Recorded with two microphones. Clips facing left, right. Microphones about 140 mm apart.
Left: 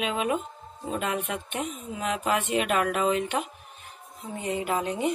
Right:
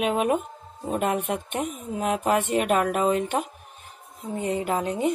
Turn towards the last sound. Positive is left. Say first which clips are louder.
# right 2 dB
turn(degrees=-40)  # may be behind; listen again after turning